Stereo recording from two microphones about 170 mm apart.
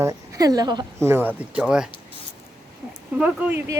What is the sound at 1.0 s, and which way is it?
Speech, 10° right (ahead or behind).